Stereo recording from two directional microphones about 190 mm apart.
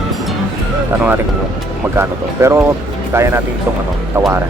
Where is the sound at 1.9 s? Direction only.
10° right (ahead or behind).